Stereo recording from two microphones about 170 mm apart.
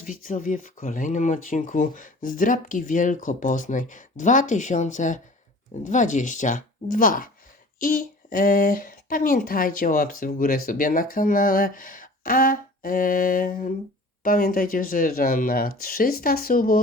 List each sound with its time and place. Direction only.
0.0 s speech: 50° left (ahead or behind)